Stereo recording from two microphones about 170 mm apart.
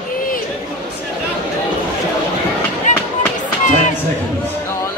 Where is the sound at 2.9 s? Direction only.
45° left (ahead or behind).